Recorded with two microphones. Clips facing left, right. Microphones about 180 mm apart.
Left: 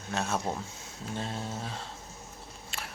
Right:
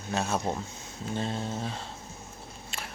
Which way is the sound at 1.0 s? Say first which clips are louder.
Right 4 dB; centre (ahead or behind).